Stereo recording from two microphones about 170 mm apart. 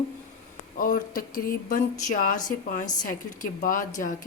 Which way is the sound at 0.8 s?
55° left (ahead or behind).